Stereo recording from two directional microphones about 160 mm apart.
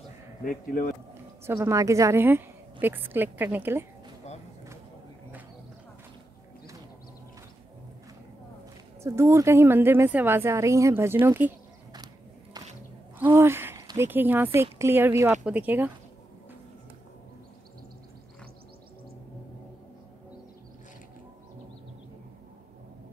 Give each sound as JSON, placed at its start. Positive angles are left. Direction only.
{"t": 0.5, "sound": "speech", "side_deg": 60}
{"t": 1.4, "sound": "a woman's voice", "side_deg": -15}
{"t": 9.0, "sound": "a woman's voice", "side_deg": -15}
{"t": 13.2, "sound": "a sound", "side_deg": -15}
{"t": 13.8, "sound": "a woman's voice", "side_deg": -15}